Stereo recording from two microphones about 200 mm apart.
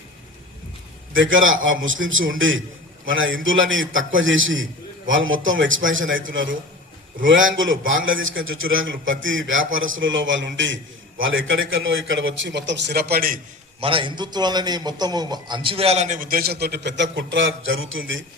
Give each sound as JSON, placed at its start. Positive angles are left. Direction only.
{"t": 1.1, "sound": "a man's voice", "side_deg": -75}
{"t": 13.8, "sound": "a man's voice", "side_deg": -25}